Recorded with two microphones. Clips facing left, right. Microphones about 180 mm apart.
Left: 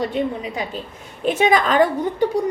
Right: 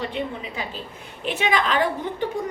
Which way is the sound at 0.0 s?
40° left (ahead or behind).